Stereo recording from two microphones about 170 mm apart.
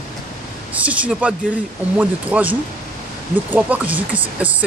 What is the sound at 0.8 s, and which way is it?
Speech, 10° right (ahead or behind).